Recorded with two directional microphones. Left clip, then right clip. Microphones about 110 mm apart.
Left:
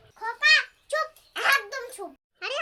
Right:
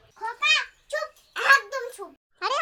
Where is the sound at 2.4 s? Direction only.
15° right (ahead or behind).